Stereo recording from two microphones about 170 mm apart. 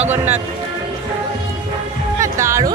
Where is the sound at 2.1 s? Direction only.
20° right (ahead or behind).